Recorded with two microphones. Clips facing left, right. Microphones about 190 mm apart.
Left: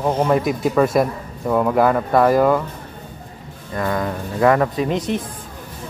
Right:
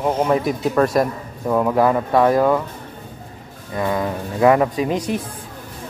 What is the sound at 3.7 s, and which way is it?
Speech, 15° right (ahead or behind).